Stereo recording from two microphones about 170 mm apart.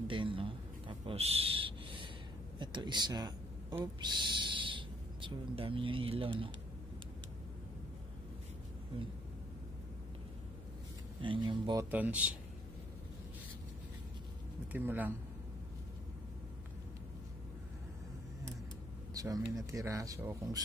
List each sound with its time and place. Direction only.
0.1 s a sound: 30° right (ahead or behind)
2.6 s speech: 25° right (ahead or behind)
11.1 s speech: 30° right (ahead or behind)
11.9 s speech: 10° right (ahead or behind)
14.7 s speech: 10° right (ahead or behind)
19.1 s speech: 20° right (ahead or behind)